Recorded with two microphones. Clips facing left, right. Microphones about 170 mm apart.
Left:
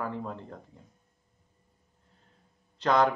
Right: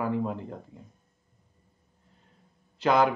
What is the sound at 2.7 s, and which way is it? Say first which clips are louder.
Speech: right 2 dB; 5° right (ahead or behind).